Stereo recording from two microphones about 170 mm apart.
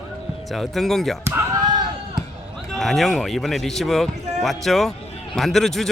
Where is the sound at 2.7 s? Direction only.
Centre (ahead or behind).